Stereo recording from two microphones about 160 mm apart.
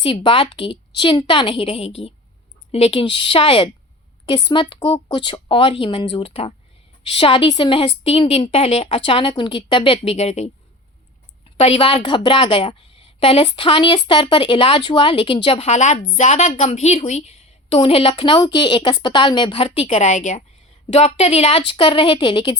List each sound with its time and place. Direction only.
0.0 s a woman's voice: 35° left (ahead or behind)
11.5 s a woman's voice: 35° left (ahead or behind)